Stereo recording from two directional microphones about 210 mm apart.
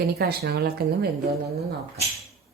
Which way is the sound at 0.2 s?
50° right (ahead or behind).